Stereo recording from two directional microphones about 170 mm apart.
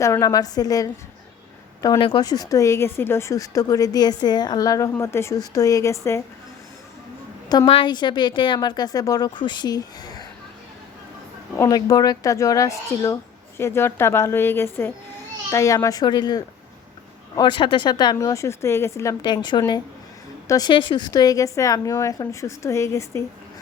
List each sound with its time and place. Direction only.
0.0 s speech: 20° left (ahead or behind)
7.7 s speech: 30° left (ahead or behind)
11.5 s a woman's voice: 20° left (ahead or behind)